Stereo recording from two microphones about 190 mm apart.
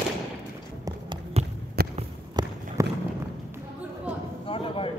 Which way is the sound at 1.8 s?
55° right (ahead or behind).